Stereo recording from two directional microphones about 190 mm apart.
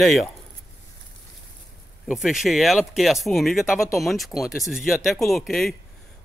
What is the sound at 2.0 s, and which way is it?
A man's voice, centre (ahead or behind).